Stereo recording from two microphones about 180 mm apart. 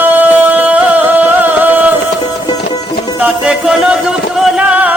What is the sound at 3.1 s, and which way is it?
Music, 5° right (ahead or behind).